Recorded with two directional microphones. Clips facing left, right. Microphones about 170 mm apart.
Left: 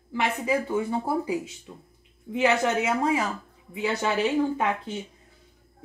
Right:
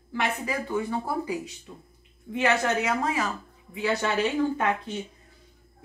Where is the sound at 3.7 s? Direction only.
25° left (ahead or behind).